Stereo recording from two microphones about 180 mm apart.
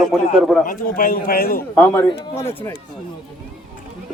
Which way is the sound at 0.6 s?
50° left (ahead or behind).